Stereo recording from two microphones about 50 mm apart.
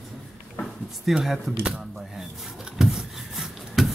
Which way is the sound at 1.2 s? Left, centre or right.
Centre.